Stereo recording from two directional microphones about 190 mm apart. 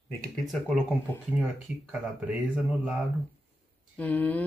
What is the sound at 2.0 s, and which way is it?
Speech, 5° right (ahead or behind).